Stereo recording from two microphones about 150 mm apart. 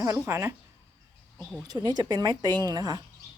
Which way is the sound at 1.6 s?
25° right (ahead or behind).